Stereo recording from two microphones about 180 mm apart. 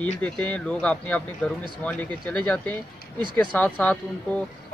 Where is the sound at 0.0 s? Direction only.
10° left (ahead or behind).